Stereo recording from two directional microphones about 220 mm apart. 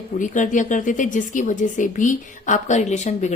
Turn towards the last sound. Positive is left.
turn(degrees=30)  # may be behind; listen again after turning